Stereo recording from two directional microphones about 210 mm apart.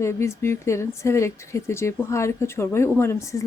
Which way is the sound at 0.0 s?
15° left (ahead or behind).